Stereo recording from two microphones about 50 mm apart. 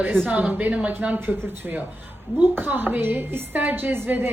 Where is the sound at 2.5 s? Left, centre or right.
Right.